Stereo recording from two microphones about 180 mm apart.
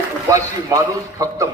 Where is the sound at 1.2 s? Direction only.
20° right (ahead or behind).